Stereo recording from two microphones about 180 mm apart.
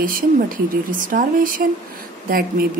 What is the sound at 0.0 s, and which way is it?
Speech, 50° right (ahead or behind).